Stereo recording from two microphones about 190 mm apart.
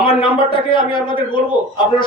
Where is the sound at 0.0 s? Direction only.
30° left (ahead or behind).